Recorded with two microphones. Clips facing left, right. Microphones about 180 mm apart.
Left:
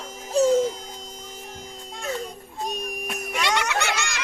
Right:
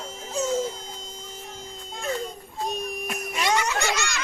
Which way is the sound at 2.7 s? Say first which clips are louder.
Right 1 dB; 15° left (ahead or behind).